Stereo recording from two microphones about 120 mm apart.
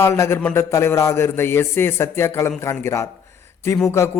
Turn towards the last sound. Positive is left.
turn(degrees=20)  # may be behind; listen again after turning